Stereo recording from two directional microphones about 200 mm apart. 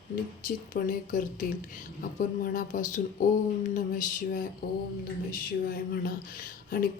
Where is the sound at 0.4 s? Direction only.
45° left (ahead or behind).